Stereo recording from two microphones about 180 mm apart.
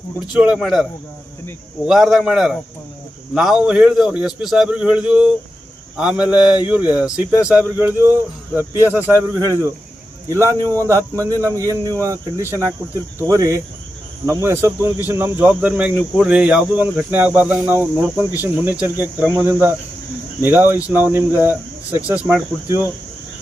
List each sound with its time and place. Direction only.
0.3 s a man's voice: 5° right (ahead or behind)